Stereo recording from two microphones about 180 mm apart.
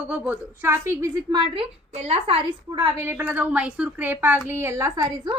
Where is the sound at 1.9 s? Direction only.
35° right (ahead or behind).